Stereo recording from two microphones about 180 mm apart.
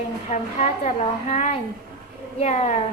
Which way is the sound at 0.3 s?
40° left (ahead or behind).